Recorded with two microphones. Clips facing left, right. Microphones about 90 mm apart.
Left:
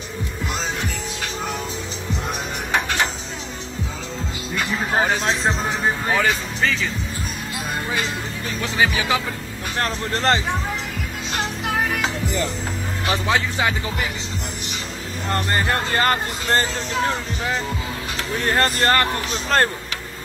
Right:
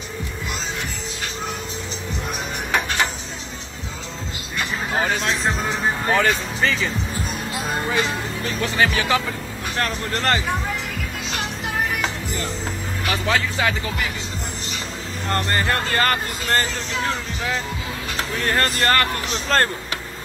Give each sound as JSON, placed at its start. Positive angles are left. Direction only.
{"t": 6.0, "sound": "speech", "side_deg": 5}
{"t": 8.5, "sound": "speech", "side_deg": 10}
{"t": 9.8, "sound": "speech", "side_deg": 20}
{"t": 13.0, "sound": "speech", "side_deg": 25}
{"t": 15.2, "sound": "speech", "side_deg": 15}
{"t": 18.5, "sound": "speech", "side_deg": 20}